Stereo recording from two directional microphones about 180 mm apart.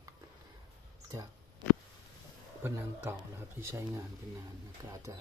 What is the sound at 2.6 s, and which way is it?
Speech, 10° right (ahead or behind).